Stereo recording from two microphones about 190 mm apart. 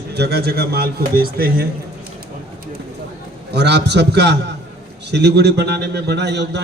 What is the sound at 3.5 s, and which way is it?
A man's voice, 60° right (ahead or behind).